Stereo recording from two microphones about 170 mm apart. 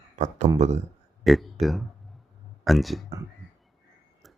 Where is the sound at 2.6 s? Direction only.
Centre (ahead or behind).